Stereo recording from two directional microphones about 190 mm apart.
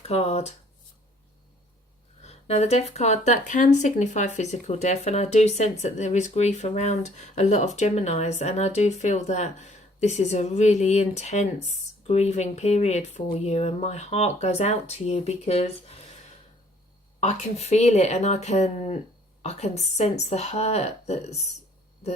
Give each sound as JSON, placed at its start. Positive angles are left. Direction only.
{"t": 0.0, "sound": "speech", "side_deg": 35}
{"t": 2.2, "sound": "speech", "side_deg": 35}
{"t": 17.2, "sound": "speech", "side_deg": 35}